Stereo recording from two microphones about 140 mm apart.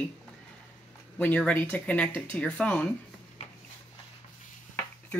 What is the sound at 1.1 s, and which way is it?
Speech, 10° left (ahead or behind).